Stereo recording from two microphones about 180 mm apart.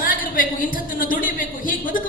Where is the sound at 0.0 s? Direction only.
50° left (ahead or behind).